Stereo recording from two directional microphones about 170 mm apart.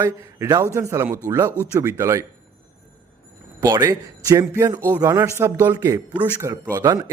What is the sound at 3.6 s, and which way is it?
A man's voice, 20° right (ahead or behind).